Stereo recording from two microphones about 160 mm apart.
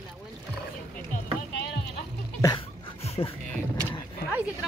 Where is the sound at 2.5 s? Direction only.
35° left (ahead or behind).